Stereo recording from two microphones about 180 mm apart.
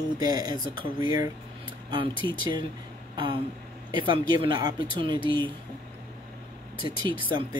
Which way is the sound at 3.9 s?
25° right (ahead or behind).